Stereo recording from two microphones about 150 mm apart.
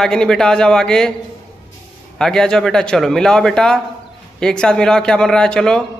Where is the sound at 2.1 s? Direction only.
5° left (ahead or behind).